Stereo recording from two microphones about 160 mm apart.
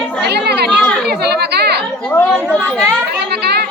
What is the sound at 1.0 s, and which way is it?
Chatter, 90° right.